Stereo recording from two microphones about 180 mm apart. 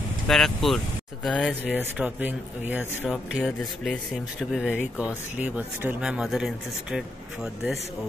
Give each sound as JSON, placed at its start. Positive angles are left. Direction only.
{"t": 0.3, "sound": "speech", "side_deg": 0}
{"t": 1.5, "sound": "speech", "side_deg": -10}
{"t": 3.0, "sound": "speech", "side_deg": 5}